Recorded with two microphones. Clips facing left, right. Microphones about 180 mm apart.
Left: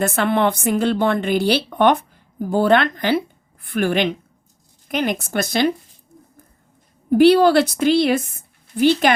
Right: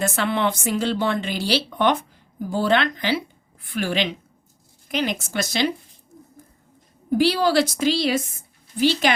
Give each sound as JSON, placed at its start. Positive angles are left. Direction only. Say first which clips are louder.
{"t": 0.0, "sound": "a woman's voice", "louder": "left 4 dB", "side_deg": 55}
{"t": 7.2, "sound": "a woman's voice", "louder": "left 7 dB", "side_deg": 60}